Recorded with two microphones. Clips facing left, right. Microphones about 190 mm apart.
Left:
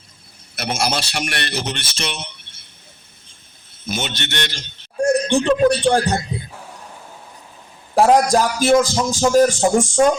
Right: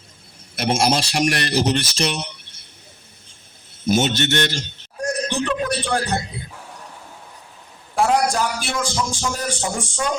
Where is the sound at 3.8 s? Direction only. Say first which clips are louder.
Right 7 dB; 40° right (ahead or behind).